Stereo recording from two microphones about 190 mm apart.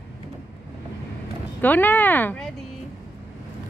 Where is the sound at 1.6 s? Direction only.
10° left (ahead or behind).